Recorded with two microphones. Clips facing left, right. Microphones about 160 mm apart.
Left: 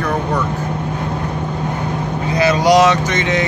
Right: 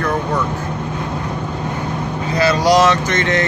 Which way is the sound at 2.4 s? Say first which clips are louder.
Left 1 dB; 20° left (ahead or behind).